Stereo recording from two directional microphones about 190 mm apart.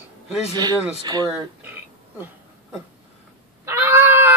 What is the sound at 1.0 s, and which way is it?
Speech, 20° right (ahead or behind).